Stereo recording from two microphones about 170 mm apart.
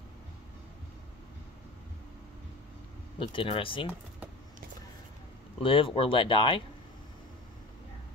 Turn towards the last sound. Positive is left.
turn(degrees=30)  # may be behind; listen again after turning